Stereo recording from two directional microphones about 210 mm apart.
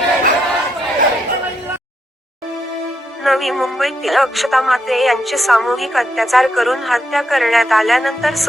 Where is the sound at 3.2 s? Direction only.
Centre (ahead or behind).